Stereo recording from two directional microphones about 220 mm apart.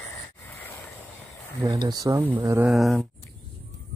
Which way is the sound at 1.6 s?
15° right (ahead or behind).